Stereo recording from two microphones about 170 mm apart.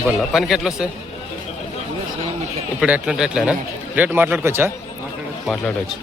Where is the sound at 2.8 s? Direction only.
5° right (ahead or behind).